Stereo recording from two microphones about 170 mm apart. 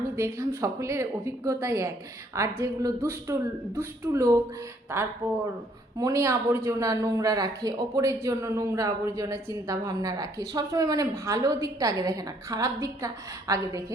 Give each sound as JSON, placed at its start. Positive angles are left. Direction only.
{"t": 0.2, "sound": "a woman's voice", "side_deg": -15}